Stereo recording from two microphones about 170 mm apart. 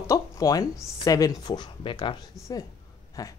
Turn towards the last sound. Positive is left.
turn(degrees=20)  # may be behind; listen again after turning